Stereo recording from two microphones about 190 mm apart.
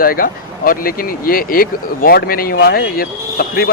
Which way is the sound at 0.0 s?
50° left (ahead or behind).